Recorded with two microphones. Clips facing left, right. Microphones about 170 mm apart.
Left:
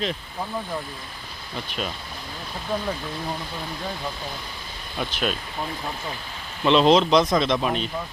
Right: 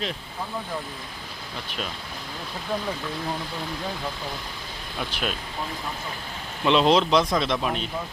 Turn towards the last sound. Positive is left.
turn(degrees=-5)  # may be behind; listen again after turning